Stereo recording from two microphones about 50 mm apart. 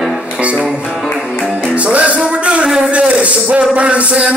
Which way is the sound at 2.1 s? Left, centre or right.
Right.